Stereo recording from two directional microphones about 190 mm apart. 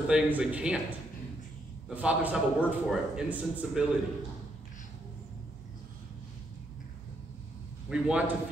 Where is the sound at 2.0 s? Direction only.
5° right (ahead or behind).